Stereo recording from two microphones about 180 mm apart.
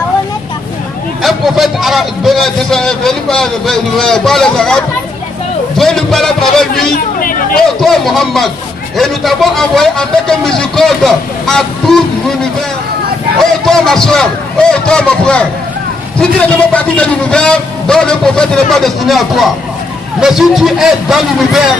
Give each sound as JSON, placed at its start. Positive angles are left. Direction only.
{"t": 1.2, "sound": "a man's voice", "side_deg": 0}
{"t": 7.2, "sound": "chatter", "side_deg": 50}
{"t": 7.6, "sound": "a man's voice", "side_deg": 0}